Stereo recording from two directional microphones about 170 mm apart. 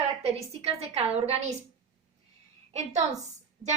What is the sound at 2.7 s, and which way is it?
Speech, 40° right (ahead or behind).